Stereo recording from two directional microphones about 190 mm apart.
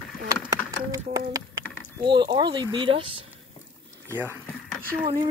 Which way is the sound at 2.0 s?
25° right (ahead or behind).